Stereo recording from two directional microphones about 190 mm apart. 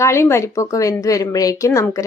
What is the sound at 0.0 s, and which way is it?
Speech, 15° left (ahead or behind).